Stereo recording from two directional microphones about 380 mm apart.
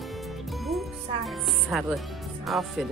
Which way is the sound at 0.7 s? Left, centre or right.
Centre.